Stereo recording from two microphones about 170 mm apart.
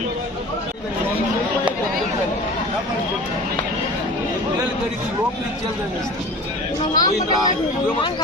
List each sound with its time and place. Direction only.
6.9 s speech: 20° left (ahead or behind)